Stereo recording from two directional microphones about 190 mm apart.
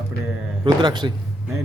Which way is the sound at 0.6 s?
25° right (ahead or behind).